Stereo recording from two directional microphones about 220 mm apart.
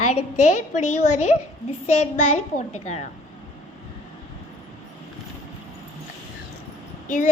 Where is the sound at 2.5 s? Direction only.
30° left (ahead or behind).